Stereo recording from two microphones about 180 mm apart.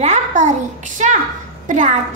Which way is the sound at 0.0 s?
40° right (ahead or behind).